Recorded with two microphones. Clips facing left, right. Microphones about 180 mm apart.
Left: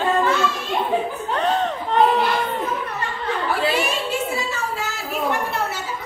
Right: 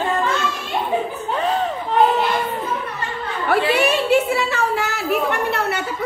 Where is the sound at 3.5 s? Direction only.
65° right (ahead or behind).